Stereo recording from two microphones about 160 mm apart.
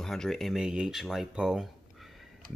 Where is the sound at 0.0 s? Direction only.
Centre (ahead or behind).